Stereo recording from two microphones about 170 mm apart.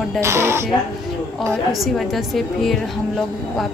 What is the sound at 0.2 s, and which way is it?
Speech, 15° right (ahead or behind).